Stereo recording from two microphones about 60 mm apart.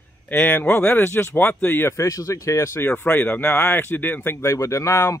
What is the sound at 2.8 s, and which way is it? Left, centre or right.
Speech, left.